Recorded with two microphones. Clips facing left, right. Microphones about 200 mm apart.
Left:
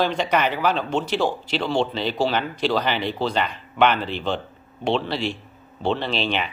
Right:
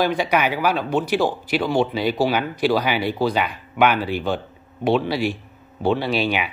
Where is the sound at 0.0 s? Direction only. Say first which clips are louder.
Right 1 dB; 10° right (ahead or behind).